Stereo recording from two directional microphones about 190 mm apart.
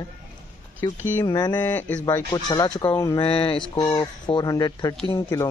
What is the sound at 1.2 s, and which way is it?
Speech, 25° left (ahead or behind).